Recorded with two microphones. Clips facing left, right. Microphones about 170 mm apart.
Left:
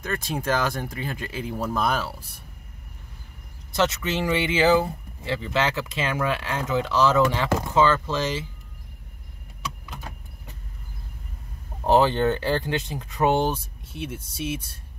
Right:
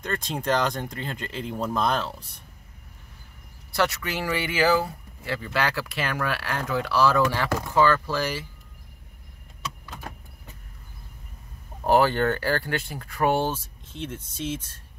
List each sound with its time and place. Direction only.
0.0 s speech: 5° left (ahead or behind)
3.7 s speech: 20° left (ahead or behind)
11.8 s speech: 20° left (ahead or behind)